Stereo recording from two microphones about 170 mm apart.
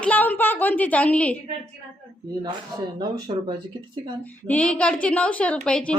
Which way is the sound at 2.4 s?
25° right (ahead or behind).